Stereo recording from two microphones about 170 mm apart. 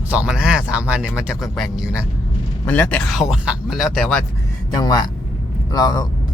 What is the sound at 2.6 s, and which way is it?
Speech, 10° left (ahead or behind).